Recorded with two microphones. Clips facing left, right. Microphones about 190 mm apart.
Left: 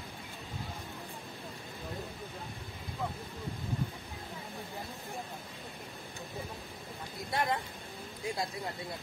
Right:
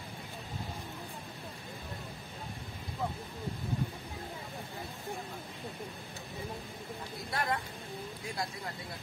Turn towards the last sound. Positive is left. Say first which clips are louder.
# left 2 dB
turn(degrees=20)  # may be behind; listen again after turning